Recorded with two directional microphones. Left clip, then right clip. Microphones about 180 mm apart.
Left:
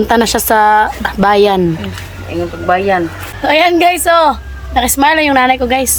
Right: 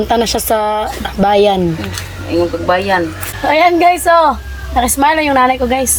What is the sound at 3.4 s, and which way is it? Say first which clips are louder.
A woman's voice: even; 10° left (ahead or behind).